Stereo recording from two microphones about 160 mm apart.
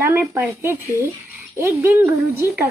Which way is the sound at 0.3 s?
15° right (ahead or behind).